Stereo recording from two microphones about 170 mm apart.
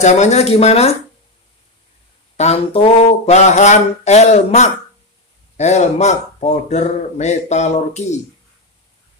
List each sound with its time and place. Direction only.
0.0 s speech: 40° left (ahead or behind)
2.3 s speech: 40° left (ahead or behind)